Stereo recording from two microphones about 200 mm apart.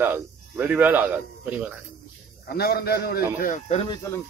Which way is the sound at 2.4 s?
50° left (ahead or behind).